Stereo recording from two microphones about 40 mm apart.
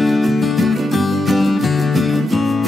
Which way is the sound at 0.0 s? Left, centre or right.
Centre.